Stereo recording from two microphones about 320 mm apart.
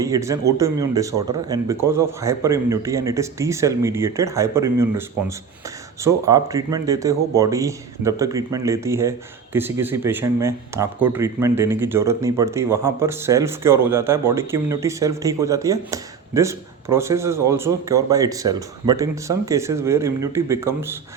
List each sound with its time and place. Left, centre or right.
0.0 s speech: centre
6.1 s speech: centre